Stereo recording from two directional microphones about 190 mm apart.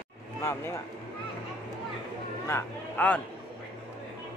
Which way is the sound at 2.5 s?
10° left (ahead or behind).